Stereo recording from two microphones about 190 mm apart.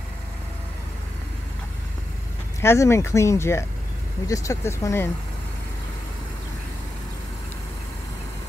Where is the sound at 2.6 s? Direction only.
15° left (ahead or behind).